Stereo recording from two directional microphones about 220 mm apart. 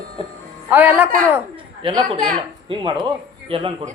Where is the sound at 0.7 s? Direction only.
10° right (ahead or behind).